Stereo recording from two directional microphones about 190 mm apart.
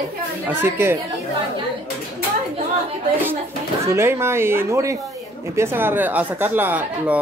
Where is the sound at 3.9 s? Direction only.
15° right (ahead or behind).